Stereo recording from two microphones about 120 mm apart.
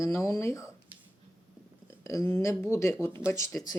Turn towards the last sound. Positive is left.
turn(degrees=25)  # may be behind; listen again after turning